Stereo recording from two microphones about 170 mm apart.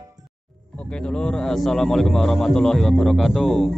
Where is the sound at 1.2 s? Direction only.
5° left (ahead or behind).